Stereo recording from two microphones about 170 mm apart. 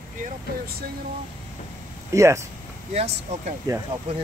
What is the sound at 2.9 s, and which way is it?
Speech, 40° right (ahead or behind).